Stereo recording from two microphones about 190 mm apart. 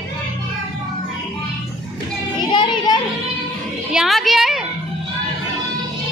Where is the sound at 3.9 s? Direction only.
Centre (ahead or behind).